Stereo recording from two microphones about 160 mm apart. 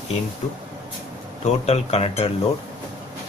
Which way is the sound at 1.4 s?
40° left (ahead or behind).